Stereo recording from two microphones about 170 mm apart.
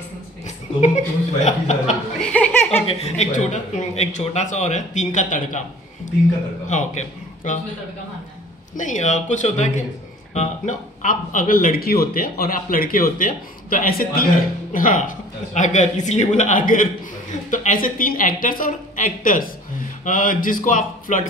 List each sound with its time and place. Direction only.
0.7 s speech: 40° left (ahead or behind)
2.3 s chuckle: 10° left (ahead or behind)
2.9 s a man's voice: 40° left (ahead or behind)
6.7 s a man's voice: 45° left (ahead or behind)
8.7 s a man's voice: 45° left (ahead or behind)